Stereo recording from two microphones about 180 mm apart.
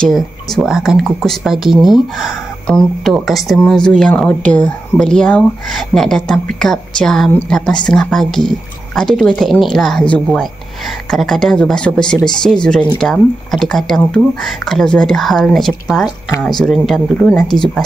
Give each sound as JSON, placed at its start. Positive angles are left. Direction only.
{"t": 0.0, "sound": "speech", "side_deg": 0}
{"t": 12.2, "sound": "speech", "side_deg": 25}
{"t": 13.0, "sound": "speech", "side_deg": 0}